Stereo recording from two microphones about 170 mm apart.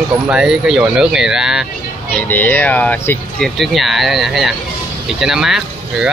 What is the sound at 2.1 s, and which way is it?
Speech, 10° left (ahead or behind).